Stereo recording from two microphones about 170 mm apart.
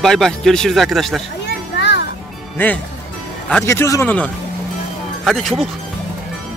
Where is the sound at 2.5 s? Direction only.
10° left (ahead or behind).